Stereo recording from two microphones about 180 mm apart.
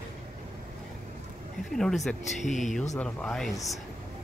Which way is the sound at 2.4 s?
40° left (ahead or behind).